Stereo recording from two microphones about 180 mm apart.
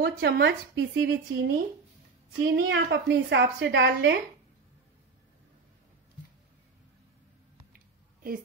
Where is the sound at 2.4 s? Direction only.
75° right (ahead or behind).